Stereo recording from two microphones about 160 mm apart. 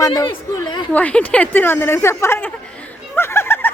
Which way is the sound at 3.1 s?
15° left (ahead or behind).